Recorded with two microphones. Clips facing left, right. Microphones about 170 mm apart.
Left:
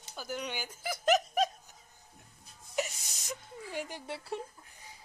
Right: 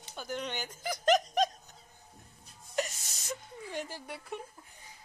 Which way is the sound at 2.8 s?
10° left (ahead or behind).